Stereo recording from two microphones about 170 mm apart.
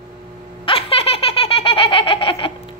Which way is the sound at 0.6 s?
35° left (ahead or behind).